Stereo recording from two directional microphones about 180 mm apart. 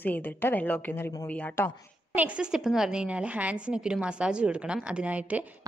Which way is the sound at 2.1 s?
5° right (ahead or behind).